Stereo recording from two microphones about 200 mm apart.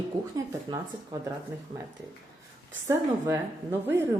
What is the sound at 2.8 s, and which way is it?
Speech, 15° right (ahead or behind).